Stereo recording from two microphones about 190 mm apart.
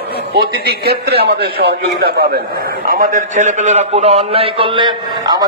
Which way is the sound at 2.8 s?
45° right (ahead or behind).